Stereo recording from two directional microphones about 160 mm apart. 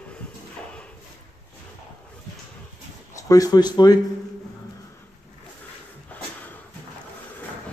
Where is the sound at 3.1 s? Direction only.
20° left (ahead or behind).